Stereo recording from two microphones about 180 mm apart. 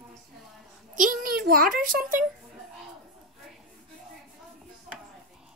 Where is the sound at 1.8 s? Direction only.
50° right (ahead or behind).